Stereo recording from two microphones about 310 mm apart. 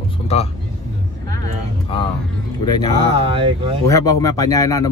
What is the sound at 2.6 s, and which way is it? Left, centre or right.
Speech, centre.